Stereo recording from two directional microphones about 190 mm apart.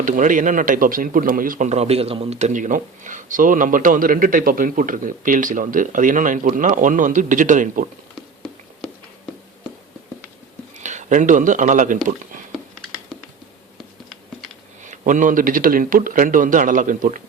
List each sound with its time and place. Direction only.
0.0 s speech: 45° right (ahead or behind)
10.8 s speech: 40° right (ahead or behind)
14.8 s speech: 45° right (ahead or behind)